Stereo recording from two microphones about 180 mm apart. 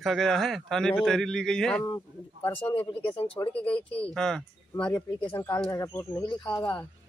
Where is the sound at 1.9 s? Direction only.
15° left (ahead or behind).